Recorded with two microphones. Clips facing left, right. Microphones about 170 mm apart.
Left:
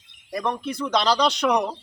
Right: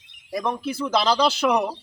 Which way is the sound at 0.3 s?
5° right (ahead or behind).